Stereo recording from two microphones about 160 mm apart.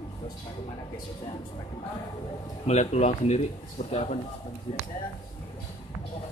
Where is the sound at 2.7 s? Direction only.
45° left (ahead or behind).